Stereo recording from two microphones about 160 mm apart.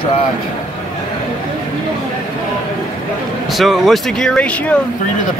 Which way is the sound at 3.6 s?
Centre (ahead or behind).